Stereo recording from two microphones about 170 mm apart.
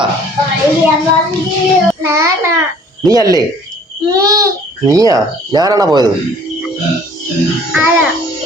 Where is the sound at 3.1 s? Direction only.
20° right (ahead or behind).